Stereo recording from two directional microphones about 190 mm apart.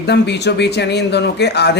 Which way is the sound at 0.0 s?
60° left (ahead or behind).